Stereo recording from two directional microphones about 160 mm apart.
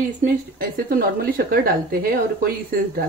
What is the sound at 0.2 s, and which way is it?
Speech, 65° right (ahead or behind).